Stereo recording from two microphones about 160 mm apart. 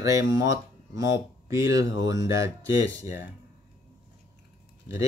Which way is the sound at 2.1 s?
20° right (ahead or behind).